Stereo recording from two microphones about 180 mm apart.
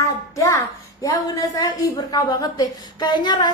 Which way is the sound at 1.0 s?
20° left (ahead or behind).